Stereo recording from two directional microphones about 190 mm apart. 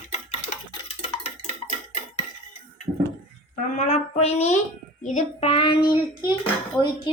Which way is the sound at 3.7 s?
35° left (ahead or behind).